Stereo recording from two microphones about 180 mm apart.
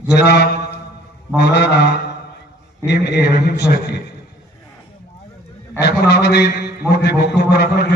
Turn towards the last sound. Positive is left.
turn(degrees=65)  # may be behind; listen again after turning